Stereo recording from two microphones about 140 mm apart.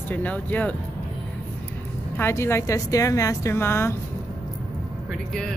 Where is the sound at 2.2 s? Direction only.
20° left (ahead or behind).